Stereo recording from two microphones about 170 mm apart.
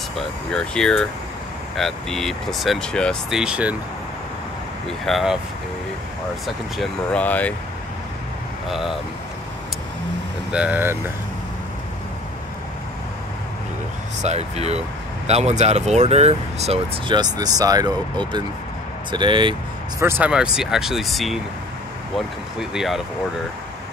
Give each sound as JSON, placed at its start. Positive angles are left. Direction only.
{"t": 0.1, "sound": "speech", "side_deg": 5}
{"t": 4.8, "sound": "speech", "side_deg": 0}
{"t": 6.4, "sound": "speech", "side_deg": 5}
{"t": 8.6, "sound": "speech", "side_deg": 0}
{"t": 10.5, "sound": "speech", "side_deg": -10}
{"t": 14.2, "sound": "speech", "side_deg": -40}
{"t": 17.1, "sound": "speech", "side_deg": -25}
{"t": 20.0, "sound": "speech", "side_deg": -15}
{"t": 22.6, "sound": "speech", "side_deg": -5}